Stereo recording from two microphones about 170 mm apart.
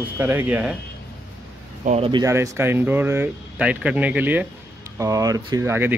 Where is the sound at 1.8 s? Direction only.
40° right (ahead or behind).